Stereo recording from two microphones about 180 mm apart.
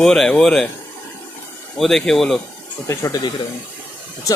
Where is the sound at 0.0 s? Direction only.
5° left (ahead or behind).